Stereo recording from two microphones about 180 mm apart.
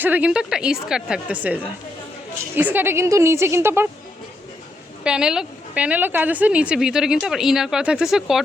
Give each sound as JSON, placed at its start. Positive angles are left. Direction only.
{"t": 0.0, "sound": "a woman's voice", "side_deg": -10}
{"t": 5.0, "sound": "a woman's voice", "side_deg": -5}